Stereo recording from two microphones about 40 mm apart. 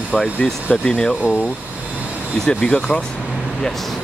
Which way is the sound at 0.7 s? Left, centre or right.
Left.